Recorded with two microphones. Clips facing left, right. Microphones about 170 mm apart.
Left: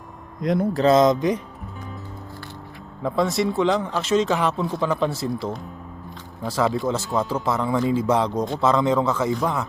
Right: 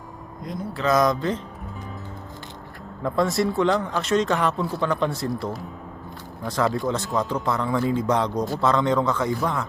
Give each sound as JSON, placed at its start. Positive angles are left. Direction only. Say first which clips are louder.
{"t": 0.4, "sound": "speech", "louder": "left 11 dB", "side_deg": 70}
{"t": 0.7, "sound": "speech", "louder": "left 4 dB", "side_deg": 35}
{"t": 0.9, "sound": "speech", "louder": "left 1 dB", "side_deg": 20}
{"t": 3.0, "sound": "a man's voice", "louder": "even", "side_deg": 0}